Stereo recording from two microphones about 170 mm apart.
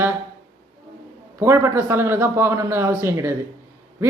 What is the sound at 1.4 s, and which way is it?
Speech, 15° right (ahead or behind).